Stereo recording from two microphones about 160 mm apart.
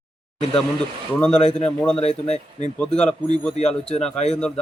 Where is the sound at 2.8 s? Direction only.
5° left (ahead or behind).